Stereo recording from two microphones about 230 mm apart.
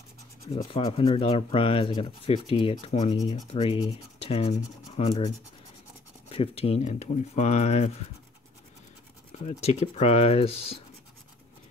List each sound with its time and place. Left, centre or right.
0.5 s speech: left
9.3 s speech: left